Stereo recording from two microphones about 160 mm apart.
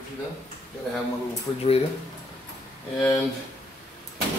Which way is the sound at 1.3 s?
40° left (ahead or behind).